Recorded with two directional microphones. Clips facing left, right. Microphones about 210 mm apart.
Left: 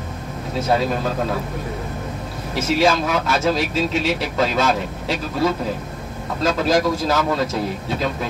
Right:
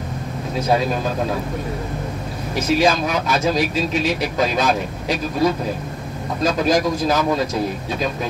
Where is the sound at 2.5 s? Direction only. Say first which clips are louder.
Right 1 dB; 15° right (ahead or behind).